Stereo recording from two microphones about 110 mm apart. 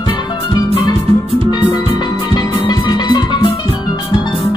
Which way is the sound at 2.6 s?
40° left (ahead or behind).